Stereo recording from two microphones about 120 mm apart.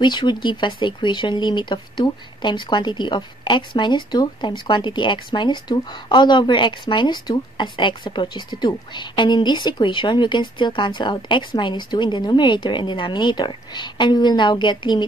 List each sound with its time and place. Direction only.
0.0 s speech: 40° left (ahead or behind)